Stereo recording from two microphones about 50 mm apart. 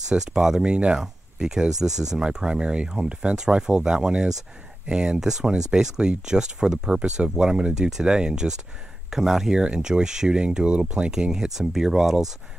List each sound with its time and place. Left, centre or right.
0.1 s speech: centre